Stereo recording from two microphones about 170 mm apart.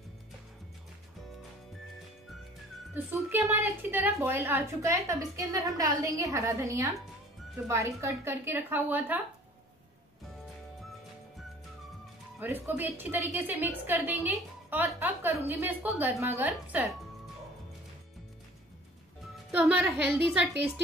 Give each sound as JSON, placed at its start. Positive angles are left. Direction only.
{"t": 2.9, "sound": "a woman's voice", "side_deg": -10}
{"t": 12.4, "sound": "a woman's voice", "side_deg": -10}
{"t": 19.5, "sound": "a woman's voice", "side_deg": -10}